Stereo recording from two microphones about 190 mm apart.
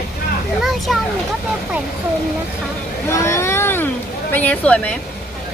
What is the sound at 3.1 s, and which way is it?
Speech, 15° left (ahead or behind).